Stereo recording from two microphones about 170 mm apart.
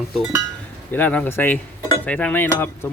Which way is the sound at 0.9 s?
10° left (ahead or behind).